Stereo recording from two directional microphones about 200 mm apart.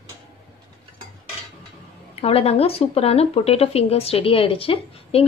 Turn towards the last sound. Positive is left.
turn(degrees=30)  # may be behind; listen again after turning